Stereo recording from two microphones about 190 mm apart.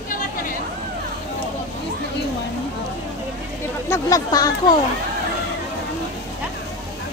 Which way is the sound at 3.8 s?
15° left (ahead or behind).